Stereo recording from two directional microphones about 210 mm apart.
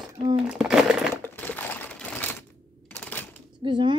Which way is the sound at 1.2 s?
10° left (ahead or behind).